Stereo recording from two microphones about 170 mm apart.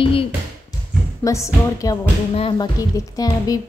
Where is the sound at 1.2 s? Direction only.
20° left (ahead or behind).